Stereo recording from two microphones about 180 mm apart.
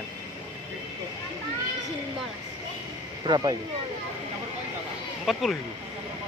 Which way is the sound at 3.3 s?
20° right (ahead or behind).